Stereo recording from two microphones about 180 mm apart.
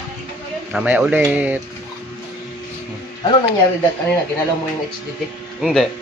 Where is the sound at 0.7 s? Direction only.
5° right (ahead or behind).